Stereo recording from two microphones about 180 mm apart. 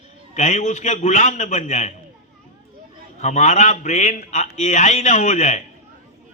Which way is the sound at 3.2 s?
40° left (ahead or behind).